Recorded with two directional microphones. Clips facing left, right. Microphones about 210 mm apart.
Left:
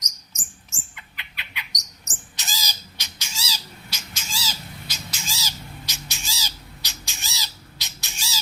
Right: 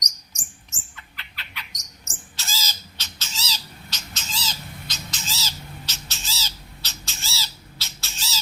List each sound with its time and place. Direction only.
0.9 s bird: 15° left (ahead or behind)